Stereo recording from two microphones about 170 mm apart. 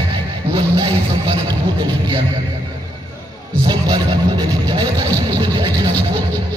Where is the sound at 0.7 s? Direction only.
25° right (ahead or behind).